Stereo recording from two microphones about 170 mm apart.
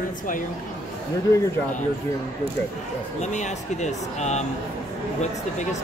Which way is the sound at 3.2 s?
45° left (ahead or behind).